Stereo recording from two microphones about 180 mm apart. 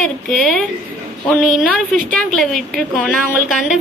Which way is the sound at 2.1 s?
Centre (ahead or behind).